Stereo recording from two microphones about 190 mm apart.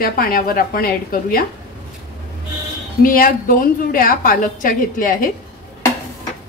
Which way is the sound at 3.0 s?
45° left (ahead or behind).